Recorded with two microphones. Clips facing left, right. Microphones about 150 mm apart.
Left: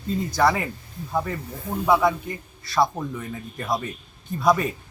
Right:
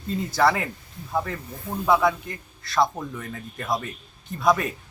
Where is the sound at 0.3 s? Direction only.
Centre (ahead or behind).